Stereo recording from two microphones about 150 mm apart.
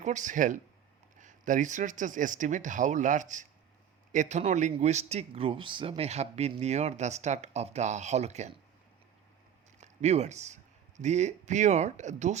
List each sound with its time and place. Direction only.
0.0 s speech: 55° right (ahead or behind)
9.8 s speech: 50° right (ahead or behind)